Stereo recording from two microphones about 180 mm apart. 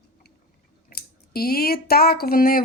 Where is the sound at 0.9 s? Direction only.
60° left (ahead or behind).